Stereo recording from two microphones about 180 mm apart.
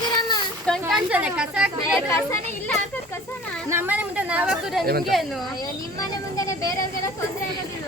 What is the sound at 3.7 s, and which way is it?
A woman's voice, 10° right (ahead or behind).